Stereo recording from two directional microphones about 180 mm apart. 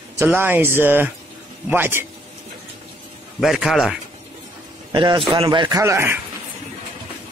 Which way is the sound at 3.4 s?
Centre (ahead or behind).